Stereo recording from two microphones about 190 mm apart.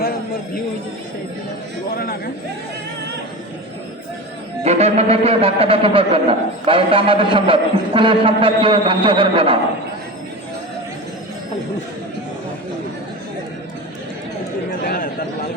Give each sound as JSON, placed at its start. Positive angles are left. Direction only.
{"t": 2.0, "sound": "speech", "side_deg": 50}
{"t": 4.6, "sound": "a man's voice", "side_deg": -35}
{"t": 14.8, "sound": "a sound", "side_deg": 50}